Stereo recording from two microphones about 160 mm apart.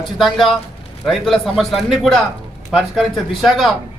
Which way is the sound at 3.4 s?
Centre (ahead or behind).